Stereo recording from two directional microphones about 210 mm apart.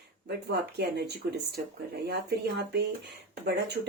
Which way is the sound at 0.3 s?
50° right (ahead or behind).